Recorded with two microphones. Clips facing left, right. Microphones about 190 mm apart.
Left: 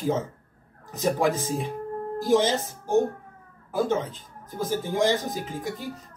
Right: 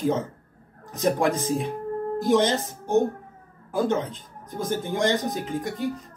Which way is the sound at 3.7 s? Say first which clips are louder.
Right 1 dB; 5° left (ahead or behind).